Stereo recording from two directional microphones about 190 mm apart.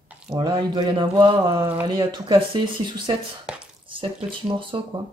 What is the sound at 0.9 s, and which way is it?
Speech, 25° right (ahead or behind).